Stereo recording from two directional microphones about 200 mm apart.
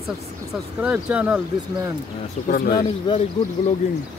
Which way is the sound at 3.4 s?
30° left (ahead or behind).